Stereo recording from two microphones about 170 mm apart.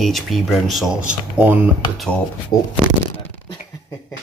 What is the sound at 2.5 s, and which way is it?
Speech, 55° left (ahead or behind).